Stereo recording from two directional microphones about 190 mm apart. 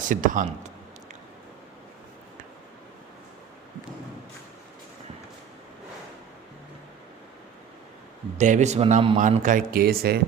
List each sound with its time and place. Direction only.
0.0 s a man's voice: 45° right (ahead or behind)
8.4 s speech: 40° right (ahead or behind)